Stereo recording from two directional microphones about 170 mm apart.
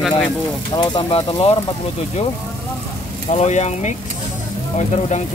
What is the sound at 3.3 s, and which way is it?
Speech, 45° left (ahead or behind).